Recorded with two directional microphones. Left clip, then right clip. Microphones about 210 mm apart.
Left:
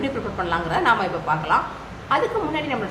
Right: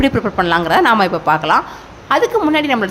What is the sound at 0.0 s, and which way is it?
A woman's voice, 55° right (ahead or behind).